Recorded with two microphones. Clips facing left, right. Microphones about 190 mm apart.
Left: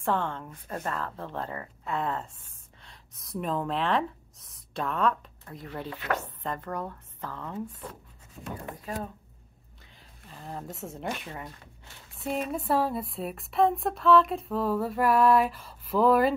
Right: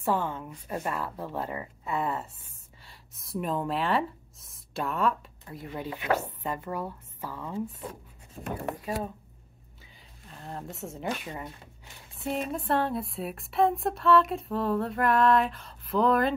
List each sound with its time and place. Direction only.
0.0 s a woman's voice: 5° right (ahead or behind)
8.4 s speech: 40° right (ahead or behind)
8.8 s a woman's voice: 10° right (ahead or behind)
10.2 s a woman's voice: centre (ahead or behind)